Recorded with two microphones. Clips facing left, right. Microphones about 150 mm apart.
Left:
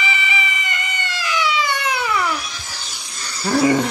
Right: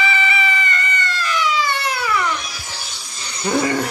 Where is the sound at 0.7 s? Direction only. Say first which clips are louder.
Right 3 dB; 15° left (ahead or behind).